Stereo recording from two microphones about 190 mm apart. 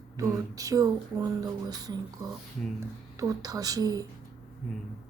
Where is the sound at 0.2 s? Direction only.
20° right (ahead or behind).